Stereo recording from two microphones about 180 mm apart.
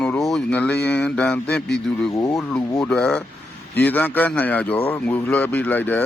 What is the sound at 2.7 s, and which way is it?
A man's voice, 5° left (ahead or behind).